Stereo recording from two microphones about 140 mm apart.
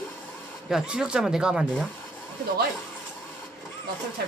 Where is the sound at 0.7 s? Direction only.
5° right (ahead or behind).